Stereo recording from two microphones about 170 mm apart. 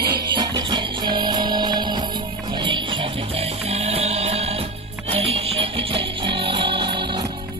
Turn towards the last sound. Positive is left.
turn(degrees=-25)  # may be behind; listen again after turning